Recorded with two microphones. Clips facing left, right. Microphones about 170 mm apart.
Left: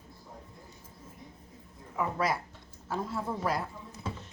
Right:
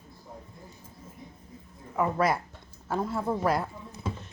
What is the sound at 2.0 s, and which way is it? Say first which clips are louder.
Speech: right 5 dB; 55° right (ahead or behind).